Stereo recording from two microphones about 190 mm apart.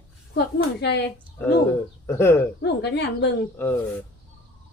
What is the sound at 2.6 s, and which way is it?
Speech, 60° left (ahead or behind).